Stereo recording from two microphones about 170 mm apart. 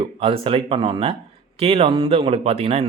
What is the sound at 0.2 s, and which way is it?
Speech, 35° right (ahead or behind).